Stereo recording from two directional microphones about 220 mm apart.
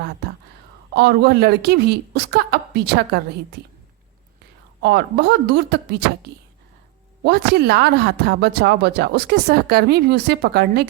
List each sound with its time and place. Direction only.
0.2 s whispering: 45° right (ahead or behind)
0.9 s speech: 45° right (ahead or behind)
4.8 s speech: 50° right (ahead or behind)